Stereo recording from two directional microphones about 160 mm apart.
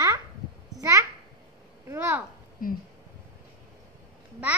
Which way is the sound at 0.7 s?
20° right (ahead or behind).